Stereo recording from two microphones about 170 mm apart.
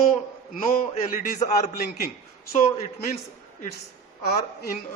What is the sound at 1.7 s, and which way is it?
Speech, 65° left (ahead or behind).